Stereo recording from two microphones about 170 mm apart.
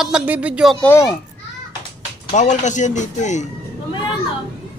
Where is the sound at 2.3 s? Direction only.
45° left (ahead or behind).